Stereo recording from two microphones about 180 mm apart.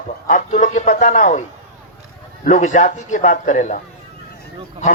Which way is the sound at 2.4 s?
45° left (ahead or behind).